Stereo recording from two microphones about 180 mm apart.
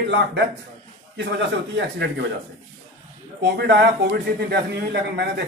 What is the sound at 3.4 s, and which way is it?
A man's voice, 70° right (ahead or behind).